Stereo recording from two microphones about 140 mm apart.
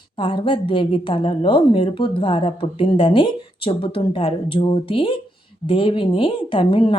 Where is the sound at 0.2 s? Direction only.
40° left (ahead or behind).